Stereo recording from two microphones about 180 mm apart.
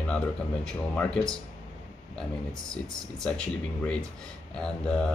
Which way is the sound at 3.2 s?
5° left (ahead or behind).